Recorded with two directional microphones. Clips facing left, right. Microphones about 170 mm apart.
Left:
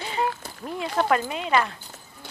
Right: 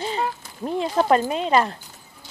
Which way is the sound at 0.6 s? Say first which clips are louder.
Right 4 dB; 25° right (ahead or behind).